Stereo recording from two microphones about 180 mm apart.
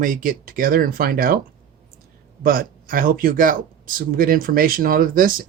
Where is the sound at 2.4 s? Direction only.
50° right (ahead or behind).